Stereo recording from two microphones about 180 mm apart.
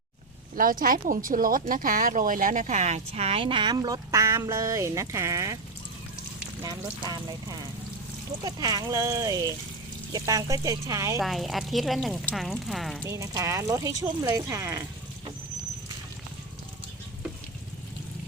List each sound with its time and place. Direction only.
0.5 s speech: 50° right (ahead or behind); by 5.5 s 15° right (ahead or behind)
7.0 s speech: 20° right (ahead or behind)
11.2 s speech: centre (ahead or behind)
13.1 s speech: 20° right (ahead or behind)